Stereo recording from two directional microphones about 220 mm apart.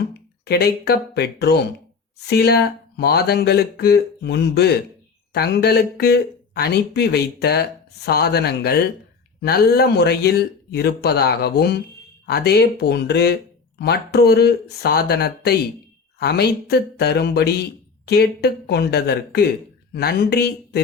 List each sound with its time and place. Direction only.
0.4 s speech: 45° left (ahead or behind)